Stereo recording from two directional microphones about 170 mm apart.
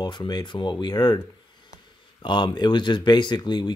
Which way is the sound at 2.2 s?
25° left (ahead or behind).